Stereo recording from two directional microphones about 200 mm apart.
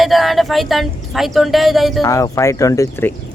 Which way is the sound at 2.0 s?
15° left (ahead or behind).